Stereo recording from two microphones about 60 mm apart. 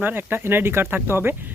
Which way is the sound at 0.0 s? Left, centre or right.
Right.